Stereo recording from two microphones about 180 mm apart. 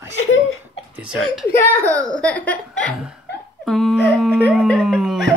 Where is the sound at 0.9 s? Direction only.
5° right (ahead or behind).